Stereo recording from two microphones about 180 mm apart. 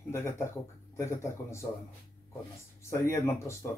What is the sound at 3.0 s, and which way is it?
Speech, 15° left (ahead or behind).